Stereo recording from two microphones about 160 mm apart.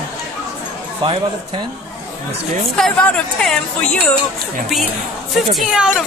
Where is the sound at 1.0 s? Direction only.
30° right (ahead or behind).